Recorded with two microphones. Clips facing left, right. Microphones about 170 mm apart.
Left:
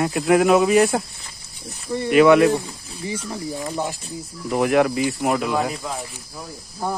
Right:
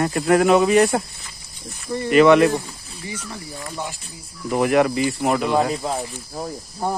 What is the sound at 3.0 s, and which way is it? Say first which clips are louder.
Speech: left 5 dB; 30° left (ahead or behind).